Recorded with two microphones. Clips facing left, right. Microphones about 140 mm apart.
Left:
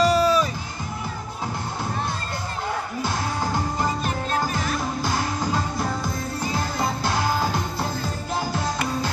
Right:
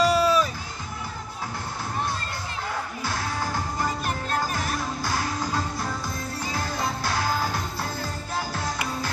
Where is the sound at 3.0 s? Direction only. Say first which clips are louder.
Left 3 dB; 20° left (ahead or behind).